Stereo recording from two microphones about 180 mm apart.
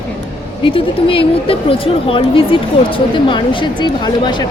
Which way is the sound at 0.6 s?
30° left (ahead or behind).